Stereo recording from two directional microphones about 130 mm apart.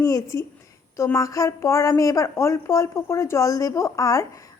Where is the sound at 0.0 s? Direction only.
25° left (ahead or behind).